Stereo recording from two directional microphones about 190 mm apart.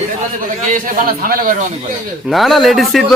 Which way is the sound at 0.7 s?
45° right (ahead or behind).